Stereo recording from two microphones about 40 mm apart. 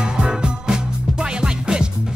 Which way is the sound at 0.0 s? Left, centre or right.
Right.